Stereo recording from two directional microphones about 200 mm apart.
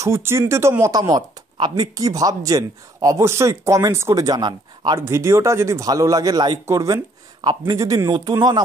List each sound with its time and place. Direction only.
0.0 s speech: 10° right (ahead or behind)